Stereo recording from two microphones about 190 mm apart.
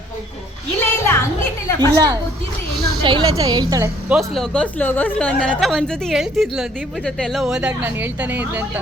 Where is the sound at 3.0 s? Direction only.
25° right (ahead or behind).